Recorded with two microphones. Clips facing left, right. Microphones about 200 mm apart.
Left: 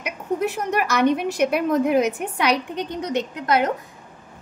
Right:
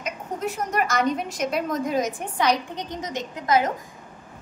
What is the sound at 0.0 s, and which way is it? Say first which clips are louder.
A woman's voice: left 5 dB; 65° left (ahead or behind).